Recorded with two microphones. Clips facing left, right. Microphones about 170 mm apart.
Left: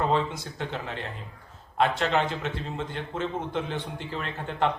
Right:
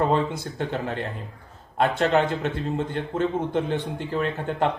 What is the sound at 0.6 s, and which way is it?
Speech, 45° right (ahead or behind).